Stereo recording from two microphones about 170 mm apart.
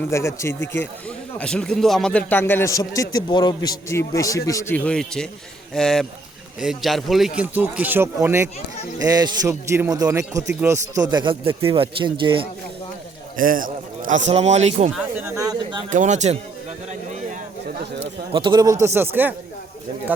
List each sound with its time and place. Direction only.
0.1 s a man's voice: 15° left (ahead or behind); by 12.5 s 30° right (ahead or behind)
13.3 s a sound: 55° right (ahead or behind)
14.3 s speech: 40° right (ahead or behind)
15.2 s speech: 15° right (ahead or behind)
15.9 s a sound: 45° right (ahead or behind)
18.3 s a man's voice: 30° right (ahead or behind); by 19.3 s 10° right (ahead or behind)